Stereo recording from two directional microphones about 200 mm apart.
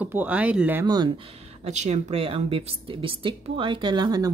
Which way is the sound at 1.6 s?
35° right (ahead or behind).